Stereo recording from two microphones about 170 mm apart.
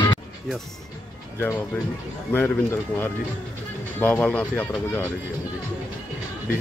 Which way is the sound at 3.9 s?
10° left (ahead or behind).